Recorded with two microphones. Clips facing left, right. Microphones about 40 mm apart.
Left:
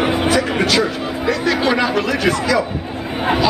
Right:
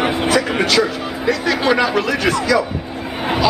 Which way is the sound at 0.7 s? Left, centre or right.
Centre.